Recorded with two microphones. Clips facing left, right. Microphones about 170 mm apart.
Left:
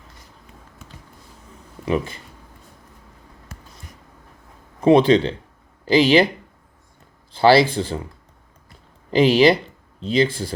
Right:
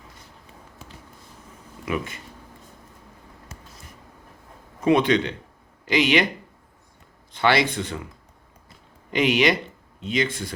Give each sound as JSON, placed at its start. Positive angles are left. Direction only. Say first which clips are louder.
{"t": 1.8, "sound": "speech", "louder": "left 6 dB", "side_deg": 30}
{"t": 4.8, "sound": "speech", "louder": "left 5 dB", "side_deg": 30}
{"t": 7.3, "sound": "speech", "louder": "left 7 dB", "side_deg": 30}
{"t": 9.0, "sound": "speech", "louder": "left 6 dB", "side_deg": 30}